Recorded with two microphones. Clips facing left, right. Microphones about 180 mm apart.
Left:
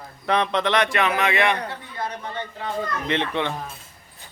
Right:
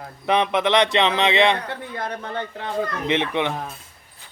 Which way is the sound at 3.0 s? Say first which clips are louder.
Right 2 dB; 15° right (ahead or behind).